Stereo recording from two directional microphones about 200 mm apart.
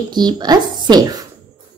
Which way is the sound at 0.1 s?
20° right (ahead or behind).